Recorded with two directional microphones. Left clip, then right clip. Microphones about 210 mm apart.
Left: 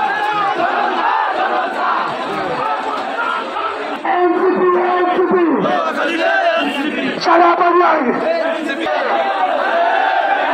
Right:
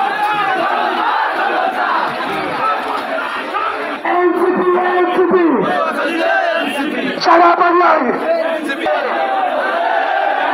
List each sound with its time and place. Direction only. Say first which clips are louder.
7.2 s music: right 2 dB; 20° right (ahead or behind)